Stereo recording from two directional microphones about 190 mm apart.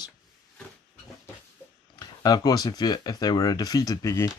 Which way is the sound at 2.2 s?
20° left (ahead or behind).